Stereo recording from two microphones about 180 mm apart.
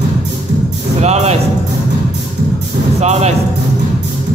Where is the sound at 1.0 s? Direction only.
35° right (ahead or behind).